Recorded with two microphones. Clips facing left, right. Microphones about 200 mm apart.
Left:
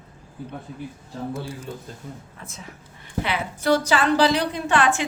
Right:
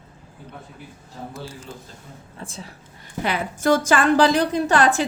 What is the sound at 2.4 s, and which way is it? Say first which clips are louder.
Speech: right 10 dB; 30° right (ahead or behind).